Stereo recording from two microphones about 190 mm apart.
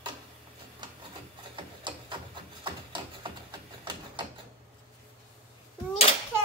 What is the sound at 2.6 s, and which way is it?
Music, 25° right (ahead or behind).